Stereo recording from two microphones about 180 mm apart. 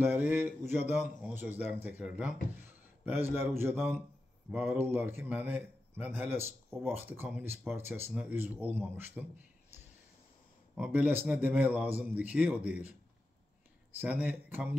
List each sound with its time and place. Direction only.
0.0 s a man's voice: 10° right (ahead or behind)
10.7 s a man's voice: 5° right (ahead or behind)
14.0 s a man's voice: 10° right (ahead or behind)